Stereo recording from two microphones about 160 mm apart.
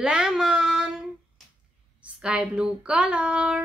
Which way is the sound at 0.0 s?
5° right (ahead or behind).